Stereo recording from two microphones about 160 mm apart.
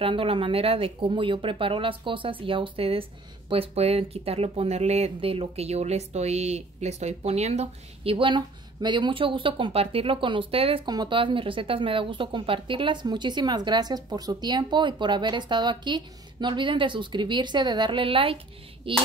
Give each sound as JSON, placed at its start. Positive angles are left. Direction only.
{"t": 0.0, "sound": "speech", "side_deg": -35}